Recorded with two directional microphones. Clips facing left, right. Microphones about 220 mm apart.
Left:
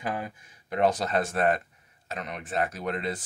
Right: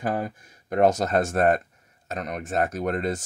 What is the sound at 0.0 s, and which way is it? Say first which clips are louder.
Speech: right 5 dB; 45° right (ahead or behind).